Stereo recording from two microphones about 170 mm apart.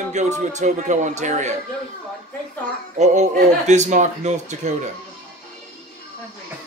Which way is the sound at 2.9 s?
45° right (ahead or behind).